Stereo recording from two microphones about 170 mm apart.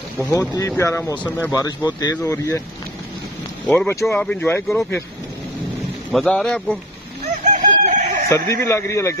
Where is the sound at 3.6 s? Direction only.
10° left (ahead or behind).